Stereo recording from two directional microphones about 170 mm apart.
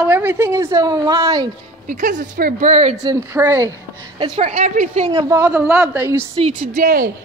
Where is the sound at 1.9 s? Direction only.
50° right (ahead or behind).